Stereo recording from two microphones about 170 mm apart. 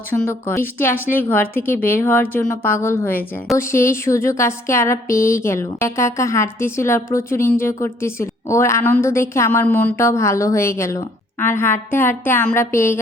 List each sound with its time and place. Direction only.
0.1 s speech: 10° left (ahead or behind)